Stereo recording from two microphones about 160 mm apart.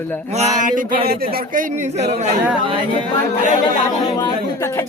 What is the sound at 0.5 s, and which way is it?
A man's voice, 55° right (ahead or behind).